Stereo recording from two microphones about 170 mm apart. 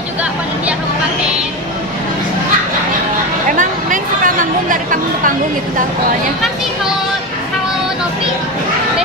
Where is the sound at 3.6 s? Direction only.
50° right (ahead or behind).